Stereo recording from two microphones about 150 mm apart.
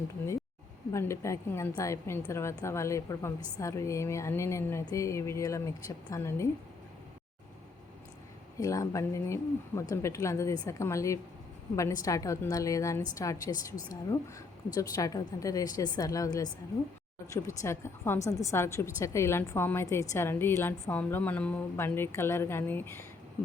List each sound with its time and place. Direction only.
0.9 s a woman's voice: 20° left (ahead or behind)
8.5 s a woman's voice: 20° left (ahead or behind)